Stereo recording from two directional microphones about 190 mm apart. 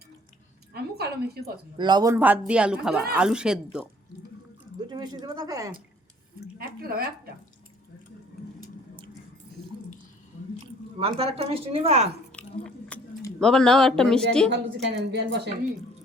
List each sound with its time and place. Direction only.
0.7 s a sound: 55° right (ahead or behind)
1.8 s a man's voice: 20° right (ahead or behind); by 3.8 s 5° right (ahead or behind)
4.9 s speech: 20° right (ahead or behind)
6.6 s a woman's voice: 55° right (ahead or behind)
11.0 s speech: 30° right (ahead or behind)
12.3 s chewing: 5° left (ahead or behind)
13.4 s a man's voice: 5° left (ahead or behind)
14.5 s a woman's voice: 65° right (ahead or behind)